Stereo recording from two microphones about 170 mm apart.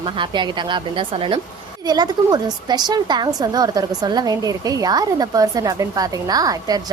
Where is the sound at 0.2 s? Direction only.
30° right (ahead or behind).